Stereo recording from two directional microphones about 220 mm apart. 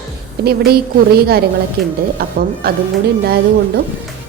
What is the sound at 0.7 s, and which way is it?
A woman's voice, 45° right (ahead or behind).